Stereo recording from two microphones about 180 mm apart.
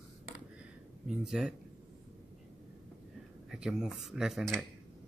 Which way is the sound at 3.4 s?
5° right (ahead or behind).